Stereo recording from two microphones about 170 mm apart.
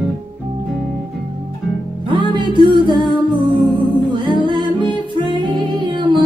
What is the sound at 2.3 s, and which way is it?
Music, 25° right (ahead or behind).